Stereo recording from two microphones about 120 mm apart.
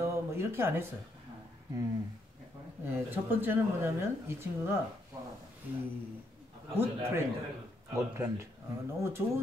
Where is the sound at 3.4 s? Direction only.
15° right (ahead or behind).